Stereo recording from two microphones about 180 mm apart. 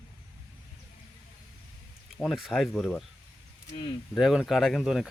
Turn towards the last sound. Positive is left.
turn(degrees=0)  # may be behind; listen again after turning